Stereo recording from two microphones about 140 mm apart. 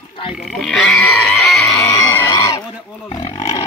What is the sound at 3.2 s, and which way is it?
Roaring cats, 45° left (ahead or behind).